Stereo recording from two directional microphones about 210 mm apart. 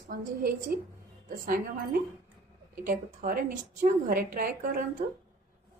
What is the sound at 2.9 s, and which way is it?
A woman's voice, 40° right (ahead or behind).